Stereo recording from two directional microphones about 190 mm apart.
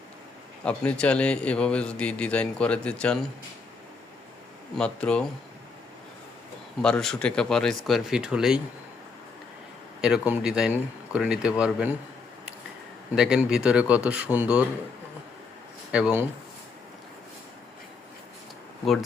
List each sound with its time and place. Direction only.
0.6 s a man's voice: 5° left (ahead or behind)
4.8 s a man's voice: 5° left (ahead or behind)
6.8 s a man's voice: 5° left (ahead or behind)
10.0 s a man's voice: 5° right (ahead or behind)
13.1 s a man's voice: 5° right (ahead or behind)
15.9 s a man's voice: 5° right (ahead or behind)